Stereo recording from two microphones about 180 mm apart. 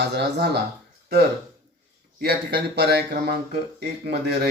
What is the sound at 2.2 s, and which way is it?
Speech, 65° right (ahead or behind).